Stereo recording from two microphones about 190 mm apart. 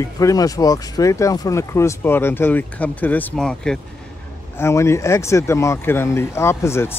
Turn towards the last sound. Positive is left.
turn(degrees=15)  # may be behind; listen again after turning